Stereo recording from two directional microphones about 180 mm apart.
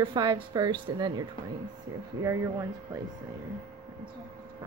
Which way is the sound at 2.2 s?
15° right (ahead or behind).